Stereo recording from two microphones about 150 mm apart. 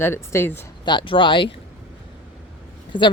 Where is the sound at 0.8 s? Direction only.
30° left (ahead or behind).